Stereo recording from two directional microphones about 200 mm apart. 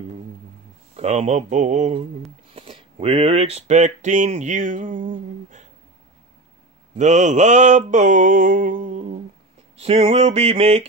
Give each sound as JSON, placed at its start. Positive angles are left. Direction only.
{"t": 0.9, "sound": "mantra", "side_deg": -35}
{"t": 2.5, "sound": "speech", "side_deg": -30}
{"t": 7.0, "sound": "mantra", "side_deg": -35}
{"t": 9.8, "sound": "mantra", "side_deg": -30}